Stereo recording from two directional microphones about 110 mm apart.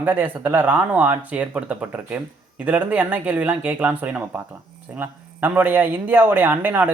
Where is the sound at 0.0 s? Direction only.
20° right (ahead or behind).